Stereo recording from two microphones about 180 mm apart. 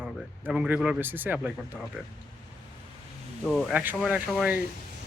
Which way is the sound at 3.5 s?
Centre (ahead or behind).